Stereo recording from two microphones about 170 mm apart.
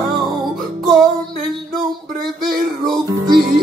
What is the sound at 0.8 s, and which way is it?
Music, centre (ahead or behind).